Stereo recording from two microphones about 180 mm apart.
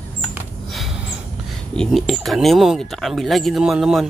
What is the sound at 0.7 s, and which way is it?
Snort, centre (ahead or behind).